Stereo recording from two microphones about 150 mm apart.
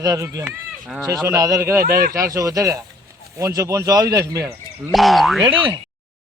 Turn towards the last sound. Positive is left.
turn(degrees=-30)  # may be behind; listen again after turning